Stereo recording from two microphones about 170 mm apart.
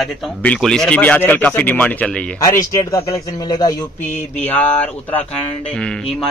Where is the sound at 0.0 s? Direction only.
5° left (ahead or behind).